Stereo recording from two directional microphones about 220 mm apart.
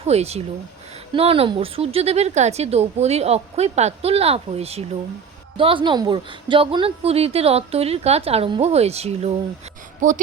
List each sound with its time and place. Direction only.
0.0 s a woman's voice: 30° right (ahead or behind)